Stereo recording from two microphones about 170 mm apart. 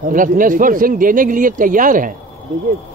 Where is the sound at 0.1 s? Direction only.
50° right (ahead or behind).